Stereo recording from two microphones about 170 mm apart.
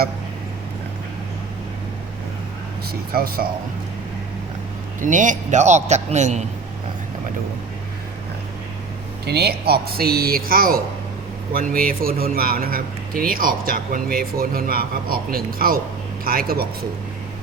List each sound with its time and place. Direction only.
3.1 s a man's voice: 60° right (ahead or behind)
4.9 s a man's voice: 50° right (ahead or behind)
9.2 s a man's voice: 70° right (ahead or behind)